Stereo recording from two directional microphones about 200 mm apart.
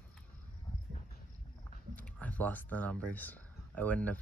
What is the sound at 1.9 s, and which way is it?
Speech, 5° left (ahead or behind).